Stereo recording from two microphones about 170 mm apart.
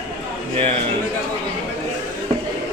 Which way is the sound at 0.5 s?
35° right (ahead or behind).